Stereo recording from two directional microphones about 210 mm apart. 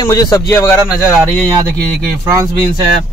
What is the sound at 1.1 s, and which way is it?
Speech, 15° right (ahead or behind).